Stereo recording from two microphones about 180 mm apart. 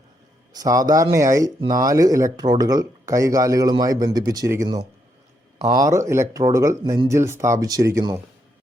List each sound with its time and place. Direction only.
0.5 s speech: 20° right (ahead or behind)
5.5 s speech: 40° right (ahead or behind)
5.8 s speech: 15° right (ahead or behind)